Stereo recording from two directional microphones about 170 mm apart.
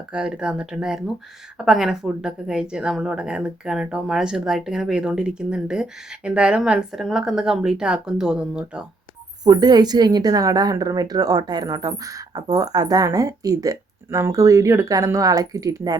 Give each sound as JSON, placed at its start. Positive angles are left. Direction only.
{"t": 0.1, "sound": "speech", "side_deg": -5}
{"t": 9.4, "sound": "a woman's voice", "side_deg": -25}